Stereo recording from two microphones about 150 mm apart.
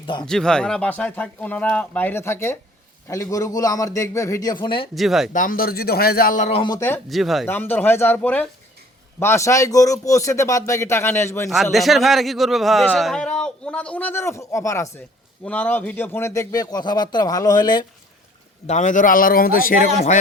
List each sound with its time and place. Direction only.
0.0 s speech: 30° left (ahead or behind)
0.3 s speech: 5° left (ahead or behind); by 4.9 s 35° left (ahead or behind)
4.9 s a man's voice: centre (ahead or behind)
5.3 s a man's voice: 65° left (ahead or behind)
6.7 s speech: 15° left (ahead or behind)
7.1 s a man's voice: centre (ahead or behind)
7.4 s speech: 15° left (ahead or behind)
11.4 s a man's voice: centre (ahead or behind); by 17.7 s 25° left (ahead or behind)
18.7 s a man's voice: 55° left (ahead or behind); by 19.7 s 75° left (ahead or behind)